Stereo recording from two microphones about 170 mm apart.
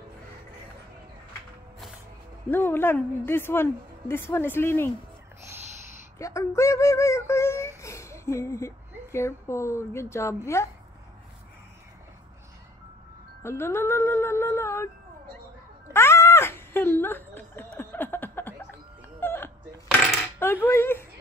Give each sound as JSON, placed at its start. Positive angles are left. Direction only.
{"t": 2.5, "sound": "a woman's voice", "side_deg": 10}
{"t": 6.1, "sound": "speech", "side_deg": 20}
{"t": 13.4, "sound": "speech", "side_deg": 15}
{"t": 15.9, "sound": "a sound", "side_deg": 15}
{"t": 20.3, "sound": "cutlery", "side_deg": 15}